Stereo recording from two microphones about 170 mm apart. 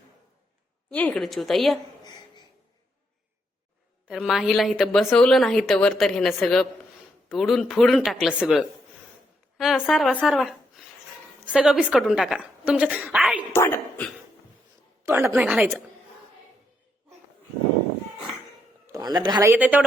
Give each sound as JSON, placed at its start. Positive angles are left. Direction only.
{"t": 0.9, "sound": "a woman's voice", "side_deg": 5}
{"t": 4.1, "sound": "a woman's voice", "side_deg": 0}
{"t": 13.5, "sound": "a woman's voice", "side_deg": 15}
{"t": 15.0, "sound": "a woman's voice", "side_deg": -15}
{"t": 15.4, "sound": "a woman's voice", "side_deg": -5}
{"t": 18.9, "sound": "a man's voice", "side_deg": -20}
{"t": 19.4, "sound": "a woman's voice", "side_deg": -10}